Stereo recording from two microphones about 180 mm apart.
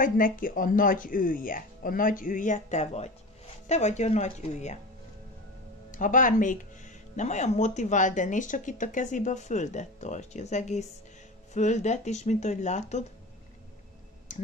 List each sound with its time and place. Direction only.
0.0 s speech: 50° left (ahead or behind)
5.9 s speech: 45° left (ahead or behind)
14.3 s speech: 45° left (ahead or behind)